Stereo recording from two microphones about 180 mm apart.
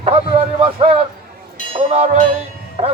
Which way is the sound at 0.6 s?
30° right (ahead or behind).